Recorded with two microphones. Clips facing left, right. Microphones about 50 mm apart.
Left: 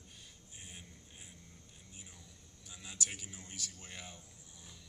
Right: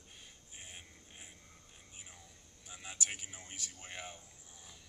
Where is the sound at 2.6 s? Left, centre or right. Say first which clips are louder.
Right 1 dB; right.